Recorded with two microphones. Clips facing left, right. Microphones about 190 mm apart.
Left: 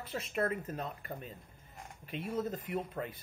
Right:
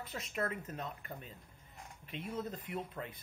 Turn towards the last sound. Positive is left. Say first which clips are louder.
# left 4 dB
turn(degrees=45)  # may be behind; listen again after turning